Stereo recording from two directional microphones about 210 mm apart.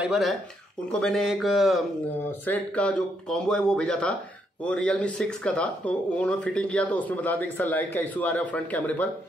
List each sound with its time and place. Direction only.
0.0 s speech: centre (ahead or behind)